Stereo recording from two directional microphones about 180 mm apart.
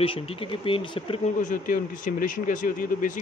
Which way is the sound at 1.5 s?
50° left (ahead or behind).